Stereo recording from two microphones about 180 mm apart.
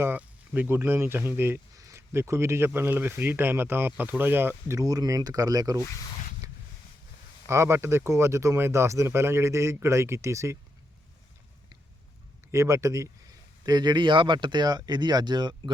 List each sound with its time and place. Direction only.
0.0 s speech: 10° right (ahead or behind)
7.4 s speech: 15° right (ahead or behind)
12.5 s speech: 15° right (ahead or behind)